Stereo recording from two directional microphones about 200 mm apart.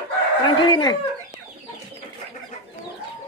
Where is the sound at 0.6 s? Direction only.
20° left (ahead or behind).